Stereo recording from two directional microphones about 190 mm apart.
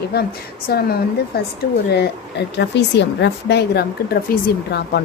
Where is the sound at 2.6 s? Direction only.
65° left (ahead or behind).